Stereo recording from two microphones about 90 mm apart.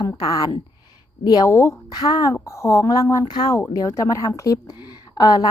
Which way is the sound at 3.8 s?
35° left (ahead or behind).